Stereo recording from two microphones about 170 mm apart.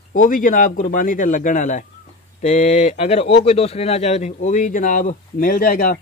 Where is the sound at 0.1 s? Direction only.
50° left (ahead or behind).